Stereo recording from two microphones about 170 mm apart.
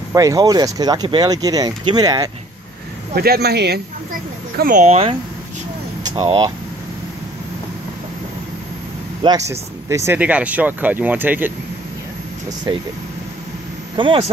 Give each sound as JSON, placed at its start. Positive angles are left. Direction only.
{"t": 0.1, "sound": "speech", "side_deg": -20}
{"t": 3.2, "sound": "speech", "side_deg": -70}
{"t": 6.1, "sound": "speech", "side_deg": -30}
{"t": 9.5, "sound": "speech", "side_deg": -15}
{"t": 13.9, "sound": "speech", "side_deg": -30}